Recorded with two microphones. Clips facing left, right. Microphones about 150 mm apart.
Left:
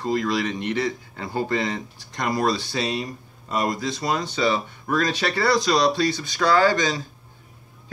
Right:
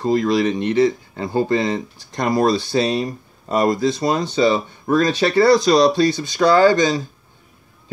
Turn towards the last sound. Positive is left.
turn(degrees=-20)  # may be behind; listen again after turning